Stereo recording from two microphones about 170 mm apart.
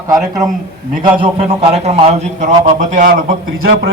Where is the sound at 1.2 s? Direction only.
35° right (ahead or behind).